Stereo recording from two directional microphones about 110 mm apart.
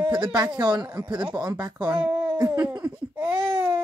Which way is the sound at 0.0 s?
45° right (ahead or behind).